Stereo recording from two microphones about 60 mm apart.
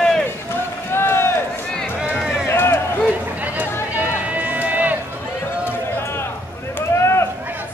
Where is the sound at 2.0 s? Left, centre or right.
Centre.